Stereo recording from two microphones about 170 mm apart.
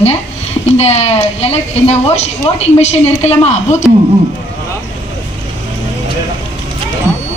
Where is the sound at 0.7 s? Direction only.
40° left (ahead or behind).